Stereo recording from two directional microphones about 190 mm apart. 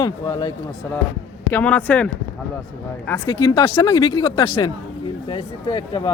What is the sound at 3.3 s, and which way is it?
Speech, 25° left (ahead or behind).